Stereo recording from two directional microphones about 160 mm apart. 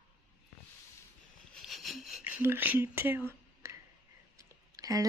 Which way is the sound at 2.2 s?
10° right (ahead or behind).